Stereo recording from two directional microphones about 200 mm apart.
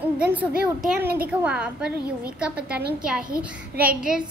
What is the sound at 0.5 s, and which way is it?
Speech, 45° right (ahead or behind).